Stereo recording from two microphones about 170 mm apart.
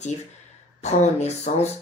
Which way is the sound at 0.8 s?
40° left (ahead or behind).